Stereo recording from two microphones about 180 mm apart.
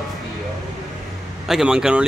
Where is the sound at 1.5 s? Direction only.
5° right (ahead or behind).